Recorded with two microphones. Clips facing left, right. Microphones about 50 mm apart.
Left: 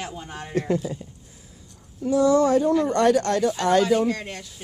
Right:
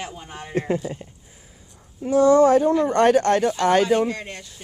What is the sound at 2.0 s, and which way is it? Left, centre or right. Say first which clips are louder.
Speech: right 4 dB; right.